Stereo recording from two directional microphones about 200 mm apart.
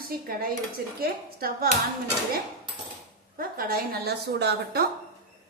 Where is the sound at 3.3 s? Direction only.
45° right (ahead or behind).